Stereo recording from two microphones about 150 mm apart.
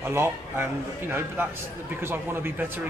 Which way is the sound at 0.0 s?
15° right (ahead or behind).